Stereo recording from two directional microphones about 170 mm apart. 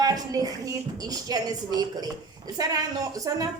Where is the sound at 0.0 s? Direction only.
20° right (ahead or behind).